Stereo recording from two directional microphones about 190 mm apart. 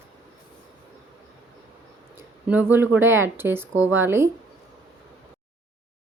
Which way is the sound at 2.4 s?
10° right (ahead or behind).